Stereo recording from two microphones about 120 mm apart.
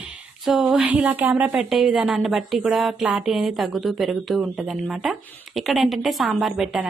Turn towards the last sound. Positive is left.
turn(degrees=0)  # may be behind; listen again after turning